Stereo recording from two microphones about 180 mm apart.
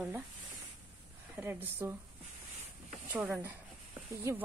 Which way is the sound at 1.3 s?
10° right (ahead or behind).